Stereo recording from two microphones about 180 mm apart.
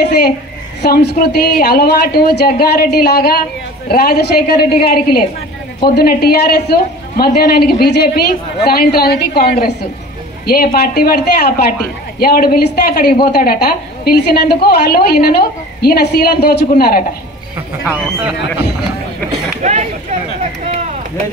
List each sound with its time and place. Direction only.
0.8 s a woman's voice: 65° left (ahead or behind)
17.8 s speech: 5° right (ahead or behind)
19.6 s speech: 40° right (ahead or behind)